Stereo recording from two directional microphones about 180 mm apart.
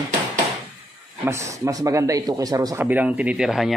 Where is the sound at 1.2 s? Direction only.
15° right (ahead or behind).